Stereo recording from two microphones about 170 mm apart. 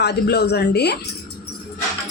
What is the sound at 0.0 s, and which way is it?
Speech, 80° left.